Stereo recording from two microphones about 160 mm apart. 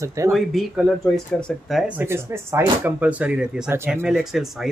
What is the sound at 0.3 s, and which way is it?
Speech, centre (ahead or behind).